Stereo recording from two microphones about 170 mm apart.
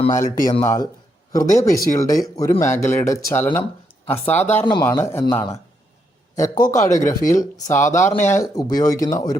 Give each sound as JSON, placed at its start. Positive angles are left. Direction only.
{"t": 0.1, "sound": "speech", "side_deg": 45}
{"t": 0.6, "sound": "speech", "side_deg": 20}
{"t": 6.3, "sound": "a man's voice", "side_deg": 20}